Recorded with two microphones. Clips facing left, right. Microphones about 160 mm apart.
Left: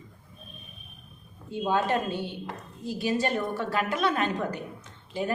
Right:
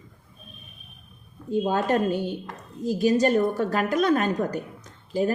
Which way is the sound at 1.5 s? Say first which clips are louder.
Right 3 dB; 45° right (ahead or behind).